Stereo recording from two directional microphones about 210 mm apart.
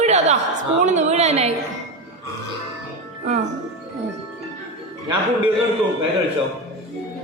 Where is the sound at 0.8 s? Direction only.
35° right (ahead or behind).